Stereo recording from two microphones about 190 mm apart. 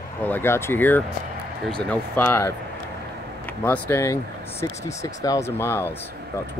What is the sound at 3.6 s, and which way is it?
Speech, 10° left (ahead or behind).